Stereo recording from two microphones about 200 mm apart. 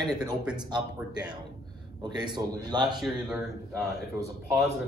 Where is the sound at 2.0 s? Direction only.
20° right (ahead or behind).